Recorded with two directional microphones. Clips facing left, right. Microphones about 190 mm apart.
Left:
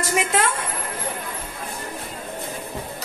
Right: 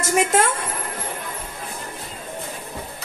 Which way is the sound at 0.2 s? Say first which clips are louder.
Right 5 dB; 45° right (ahead or behind).